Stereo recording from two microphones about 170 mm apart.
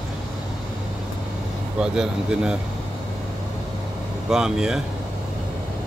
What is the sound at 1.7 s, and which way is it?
Speech, 5° right (ahead or behind).